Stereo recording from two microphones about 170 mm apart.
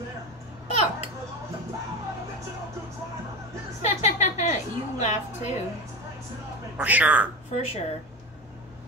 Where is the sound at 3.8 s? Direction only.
40° left (ahead or behind).